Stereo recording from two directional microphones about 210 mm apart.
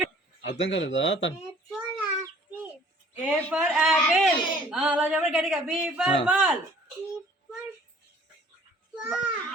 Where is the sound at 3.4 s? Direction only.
Centre (ahead or behind).